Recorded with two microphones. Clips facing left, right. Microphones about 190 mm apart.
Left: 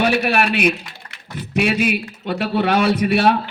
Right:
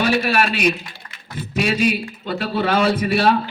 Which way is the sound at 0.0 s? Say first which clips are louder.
Left 1 dB; 55° left (ahead or behind).